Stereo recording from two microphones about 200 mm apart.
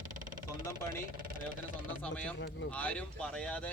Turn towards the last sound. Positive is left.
turn(degrees=5)  # may be behind; listen again after turning